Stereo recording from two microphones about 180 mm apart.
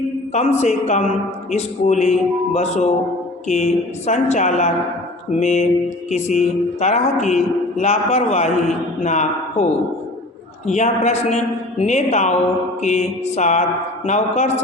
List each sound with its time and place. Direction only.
0.3 s a man's voice: 40° left (ahead or behind)
10.7 s speech: 40° left (ahead or behind)